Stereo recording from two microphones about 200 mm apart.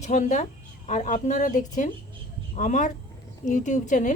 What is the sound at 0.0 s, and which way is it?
A woman's voice, 35° left (ahead or behind).